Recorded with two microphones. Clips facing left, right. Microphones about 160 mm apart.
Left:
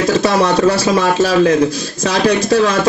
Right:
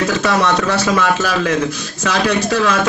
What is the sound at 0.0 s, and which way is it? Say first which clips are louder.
Speech: left 3 dB; 35° left (ahead or behind).